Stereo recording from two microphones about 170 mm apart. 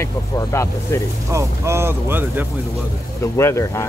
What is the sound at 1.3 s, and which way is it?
Speech, 15° right (ahead or behind).